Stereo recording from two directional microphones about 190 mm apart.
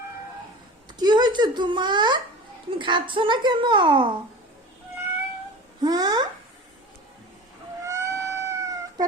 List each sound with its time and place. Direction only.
0.9 s a child's voice: 20° right (ahead or behind)
5.8 s a woman's voice: 20° right (ahead or behind)
7.9 s cat: 15° right (ahead or behind)